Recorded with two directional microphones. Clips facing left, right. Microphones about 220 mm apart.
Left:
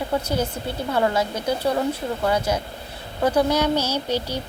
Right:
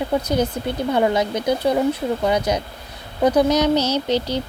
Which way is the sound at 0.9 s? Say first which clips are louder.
Right 3 dB; 15° right (ahead or behind).